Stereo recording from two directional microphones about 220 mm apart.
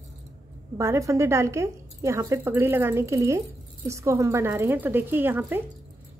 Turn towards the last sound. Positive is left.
turn(degrees=-10)  # may be behind; listen again after turning